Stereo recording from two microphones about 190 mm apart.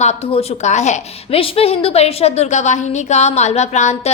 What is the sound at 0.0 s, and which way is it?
A woman's voice, 35° left (ahead or behind).